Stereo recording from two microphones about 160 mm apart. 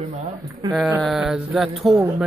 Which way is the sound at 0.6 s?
25° right (ahead or behind).